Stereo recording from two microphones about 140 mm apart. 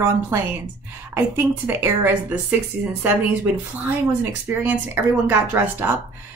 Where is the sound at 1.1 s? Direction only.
15° right (ahead or behind).